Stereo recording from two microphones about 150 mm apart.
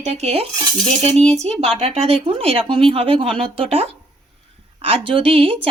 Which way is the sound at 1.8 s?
45° right (ahead or behind).